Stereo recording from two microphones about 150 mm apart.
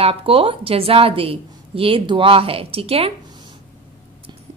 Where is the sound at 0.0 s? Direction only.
40° right (ahead or behind).